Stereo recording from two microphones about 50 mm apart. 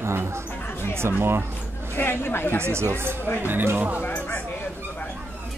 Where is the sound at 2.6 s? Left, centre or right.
Right.